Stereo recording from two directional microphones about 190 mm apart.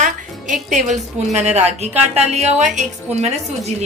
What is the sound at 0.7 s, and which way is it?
A woman's voice, 40° right (ahead or behind).